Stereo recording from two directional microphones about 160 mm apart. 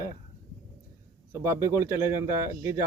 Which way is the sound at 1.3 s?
15° right (ahead or behind).